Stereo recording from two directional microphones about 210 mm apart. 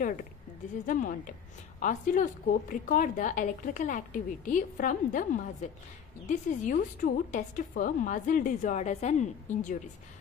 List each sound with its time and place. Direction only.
0.8 s a woman's voice: 40° left (ahead or behind)